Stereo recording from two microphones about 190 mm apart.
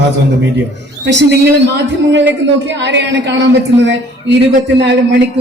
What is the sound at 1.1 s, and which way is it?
Speech, 70° right (ahead or behind).